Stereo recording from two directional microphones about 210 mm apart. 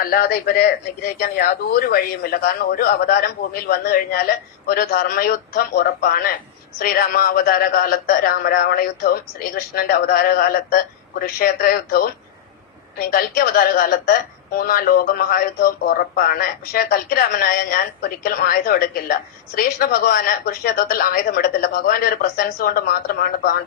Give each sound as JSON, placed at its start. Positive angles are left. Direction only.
{"t": 0.0, "sound": "a woman's voice", "side_deg": 45}
{"t": 1.9, "sound": "a woman's voice", "side_deg": 45}